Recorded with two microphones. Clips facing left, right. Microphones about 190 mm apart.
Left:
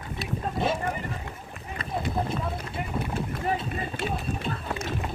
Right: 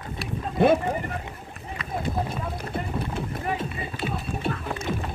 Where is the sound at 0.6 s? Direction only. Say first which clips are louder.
Right 10 dB; 60° right (ahead or behind).